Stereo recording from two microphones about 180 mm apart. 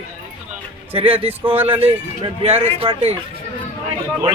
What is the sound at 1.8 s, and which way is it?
Speech, 30° right (ahead or behind).